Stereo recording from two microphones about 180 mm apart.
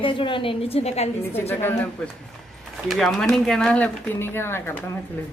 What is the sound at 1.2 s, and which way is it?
Speech, 15° left (ahead or behind).